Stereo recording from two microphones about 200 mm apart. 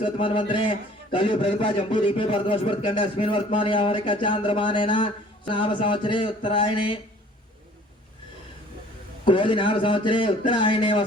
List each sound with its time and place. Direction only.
0.0 s a man's voice: 25° left (ahead or behind)
9.2 s a man's voice: 25° left (ahead or behind)